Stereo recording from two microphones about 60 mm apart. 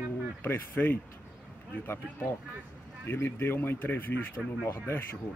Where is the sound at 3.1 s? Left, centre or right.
Left.